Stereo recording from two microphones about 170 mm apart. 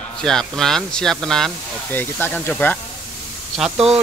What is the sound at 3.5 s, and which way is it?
Speech, 5° right (ahead or behind).